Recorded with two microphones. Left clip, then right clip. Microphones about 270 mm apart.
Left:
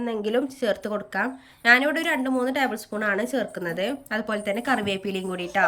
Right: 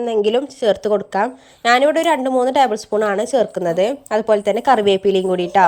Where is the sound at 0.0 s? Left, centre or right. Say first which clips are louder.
Right 9 dB; right.